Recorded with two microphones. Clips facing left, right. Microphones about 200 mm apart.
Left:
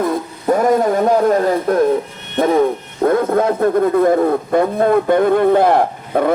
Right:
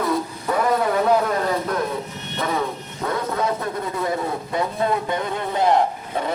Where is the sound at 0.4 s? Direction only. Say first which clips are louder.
Left 8 dB; 45° left (ahead or behind).